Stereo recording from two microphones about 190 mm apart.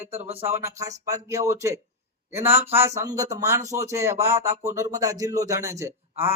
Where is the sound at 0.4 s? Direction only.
15° right (ahead or behind).